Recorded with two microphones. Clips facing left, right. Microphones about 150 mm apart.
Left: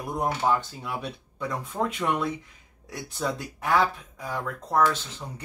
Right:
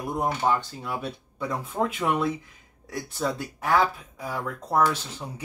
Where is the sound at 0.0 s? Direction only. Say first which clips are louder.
Right 1 dB; centre (ahead or behind).